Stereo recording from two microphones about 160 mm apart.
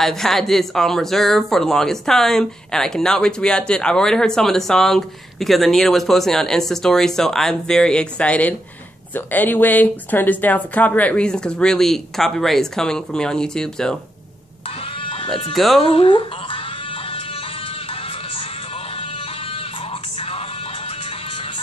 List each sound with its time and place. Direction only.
0.0 s speech: centre (ahead or behind)
15.0 s bleat: 30° left (ahead or behind)
15.5 s speech: centre (ahead or behind)
15.8 s music: 35° left (ahead or behind)